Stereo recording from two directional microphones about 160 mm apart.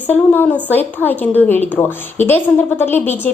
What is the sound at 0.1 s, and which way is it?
A woman's voice, 10° left (ahead or behind).